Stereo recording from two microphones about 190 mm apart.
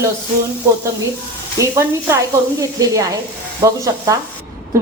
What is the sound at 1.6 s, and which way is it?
Speech, 15° right (ahead or behind).